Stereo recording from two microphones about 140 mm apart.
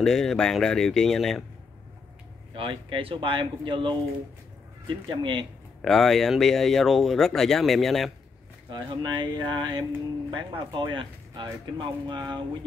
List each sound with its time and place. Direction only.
0.0 s speech: 5° left (ahead or behind)
2.5 s speech: 40° right (ahead or behind)
5.8 s speech: 5° left (ahead or behind)
8.6 s speech: 35° right (ahead or behind)